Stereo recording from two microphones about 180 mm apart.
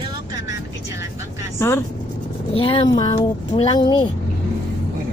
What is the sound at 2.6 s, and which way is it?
Speech, 30° left (ahead or behind).